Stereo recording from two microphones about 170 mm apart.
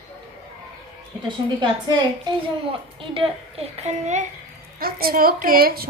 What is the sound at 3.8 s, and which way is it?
Speech, 45° right (ahead or behind).